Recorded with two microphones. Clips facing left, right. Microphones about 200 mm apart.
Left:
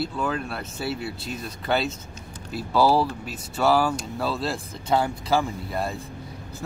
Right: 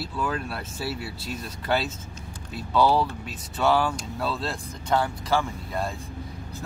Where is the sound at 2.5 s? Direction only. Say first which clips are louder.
Left 1 dB; 5° left (ahead or behind).